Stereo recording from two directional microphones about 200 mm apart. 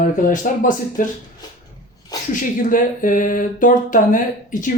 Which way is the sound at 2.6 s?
40° left (ahead or behind).